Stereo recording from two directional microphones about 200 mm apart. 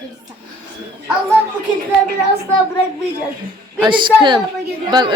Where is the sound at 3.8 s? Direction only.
25° right (ahead or behind).